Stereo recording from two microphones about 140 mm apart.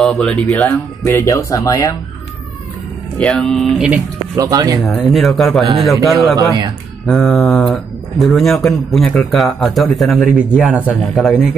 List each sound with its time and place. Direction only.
0.0 s speech: 5° left (ahead or behind); by 2.0 s 25° left (ahead or behind)
3.2 s speech: 5° left (ahead or behind)
4.4 s speech: 25° right (ahead or behind)
4.7 s speech: centre (ahead or behind)
6.3 s speech: 30° right (ahead or behind)
7.1 s speech: centre (ahead or behind)